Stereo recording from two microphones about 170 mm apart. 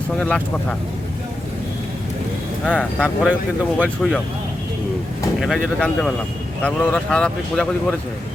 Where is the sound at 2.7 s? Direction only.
10° left (ahead or behind).